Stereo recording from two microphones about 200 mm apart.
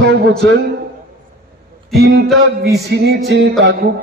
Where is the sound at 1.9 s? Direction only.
55° right (ahead or behind).